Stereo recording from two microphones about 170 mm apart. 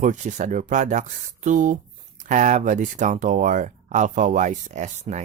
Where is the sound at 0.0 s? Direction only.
45° right (ahead or behind).